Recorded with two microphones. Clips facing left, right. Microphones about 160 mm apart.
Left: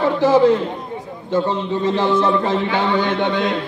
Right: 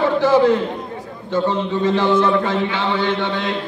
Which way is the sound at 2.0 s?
40° left (ahead or behind).